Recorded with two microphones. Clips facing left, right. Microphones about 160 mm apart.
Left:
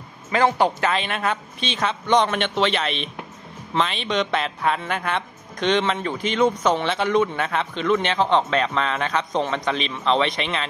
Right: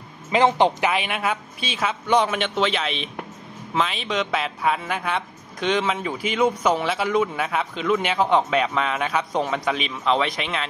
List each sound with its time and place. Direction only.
0.3 s speech: 20° right (ahead or behind); by 10.7 s 5° right (ahead or behind)